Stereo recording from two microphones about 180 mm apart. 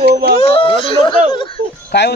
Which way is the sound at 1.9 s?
70° left (ahead or behind).